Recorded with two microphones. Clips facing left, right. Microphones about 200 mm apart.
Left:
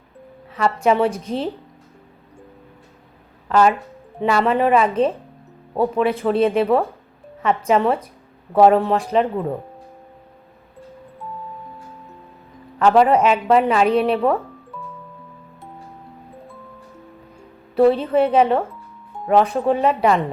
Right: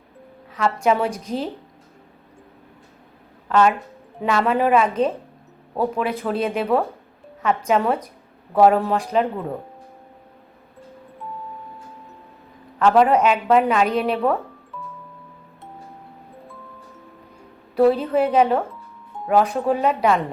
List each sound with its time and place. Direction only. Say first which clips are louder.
0.5 s a woman's voice: left 2 dB; 5° left (ahead or behind)
1.2 s speech: left 2 dB; 30° left (ahead or behind)
3.5 s a woman's voice: left 1 dB; centre (ahead or behind)
6.3 s speech: left 7 dB; 30° left (ahead or behind)
6.6 s a woman's voice: left 3 dB; centre (ahead or behind)
12.8 s a woman's voice: left 1 dB; centre (ahead or behind)
17.7 s a woman's voice: left 2 dB; centre (ahead or behind)